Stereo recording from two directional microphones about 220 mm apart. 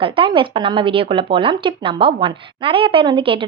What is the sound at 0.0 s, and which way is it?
Speech, 25° right (ahead or behind).